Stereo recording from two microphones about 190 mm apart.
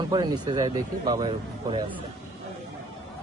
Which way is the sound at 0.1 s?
20° right (ahead or behind).